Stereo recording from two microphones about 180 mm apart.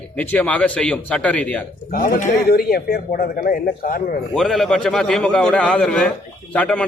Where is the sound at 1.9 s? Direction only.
55° left (ahead or behind).